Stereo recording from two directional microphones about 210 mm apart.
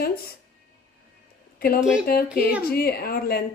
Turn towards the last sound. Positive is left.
turn(degrees=45)  # may be behind; listen again after turning